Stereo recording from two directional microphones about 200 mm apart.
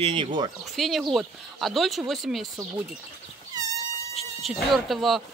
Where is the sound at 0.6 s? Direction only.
Centre (ahead or behind).